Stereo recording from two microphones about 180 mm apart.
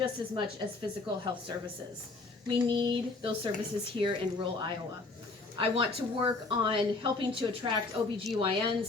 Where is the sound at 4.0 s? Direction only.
25° right (ahead or behind).